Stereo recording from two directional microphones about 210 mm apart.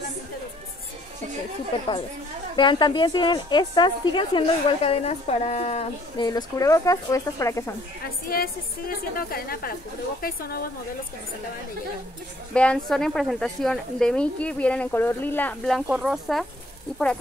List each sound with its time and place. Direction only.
2.5 s a woman's voice: 20° left (ahead or behind)
8.3 s a woman's voice: 45° left (ahead or behind)
12.5 s speech: 5° left (ahead or behind)